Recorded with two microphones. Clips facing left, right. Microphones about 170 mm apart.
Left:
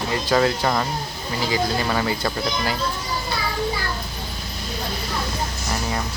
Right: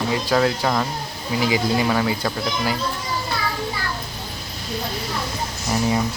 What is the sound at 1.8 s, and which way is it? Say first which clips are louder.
Speech: right 2 dB; 5° right (ahead or behind).